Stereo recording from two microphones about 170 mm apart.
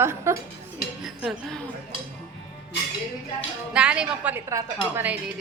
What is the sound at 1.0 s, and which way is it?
Dishes, centre (ahead or behind).